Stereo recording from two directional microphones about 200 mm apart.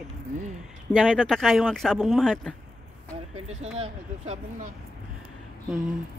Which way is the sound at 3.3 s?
30° right (ahead or behind).